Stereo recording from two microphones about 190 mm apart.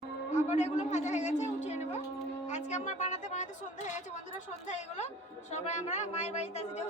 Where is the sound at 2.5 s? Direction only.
40° left (ahead or behind).